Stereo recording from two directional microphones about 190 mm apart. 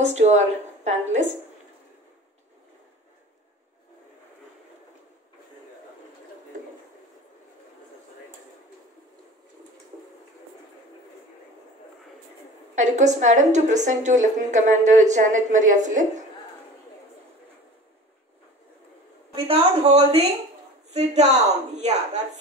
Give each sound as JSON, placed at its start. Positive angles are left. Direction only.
{"t": 0.2, "sound": "a woman's voice", "side_deg": -35}
{"t": 12.7, "sound": "a woman's voice", "side_deg": -40}
{"t": 19.3, "sound": "a woman's voice", "side_deg": -30}